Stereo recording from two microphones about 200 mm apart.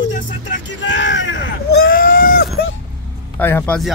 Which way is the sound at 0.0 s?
65° left (ahead or behind).